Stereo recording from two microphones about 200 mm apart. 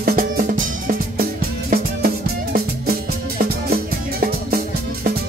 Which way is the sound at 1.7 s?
45° right (ahead or behind).